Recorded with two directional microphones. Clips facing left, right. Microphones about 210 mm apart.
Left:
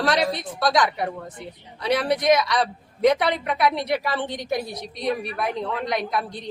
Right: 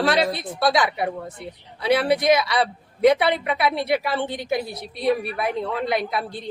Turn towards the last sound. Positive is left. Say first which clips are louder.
# right 2 dB
turn(degrees=-5)  # may be behind; listen again after turning